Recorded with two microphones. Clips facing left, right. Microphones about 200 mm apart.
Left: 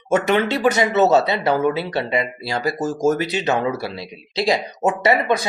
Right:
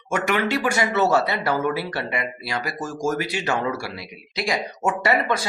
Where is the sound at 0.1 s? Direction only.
25° left (ahead or behind).